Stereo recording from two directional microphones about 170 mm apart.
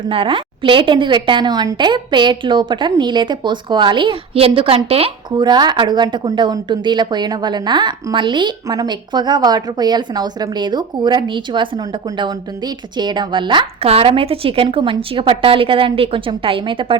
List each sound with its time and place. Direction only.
0.1 s a woman's voice: 30° right (ahead or behind)